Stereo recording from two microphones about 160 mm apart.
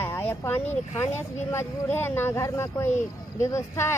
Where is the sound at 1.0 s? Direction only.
15° left (ahead or behind).